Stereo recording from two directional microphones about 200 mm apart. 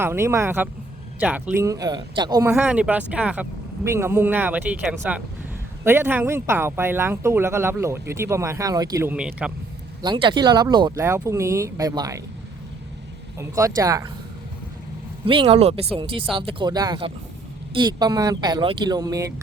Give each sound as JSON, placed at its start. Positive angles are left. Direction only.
{"t": 0.0, "sound": "speech", "side_deg": -10}
{"t": 10.0, "sound": "speech", "side_deg": -25}
{"t": 13.4, "sound": "speech", "side_deg": -15}
{"t": 15.3, "sound": "speech", "side_deg": -25}